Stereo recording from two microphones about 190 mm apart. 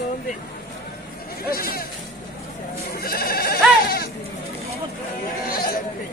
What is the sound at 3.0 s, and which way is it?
Sheep, 50° left (ahead or behind).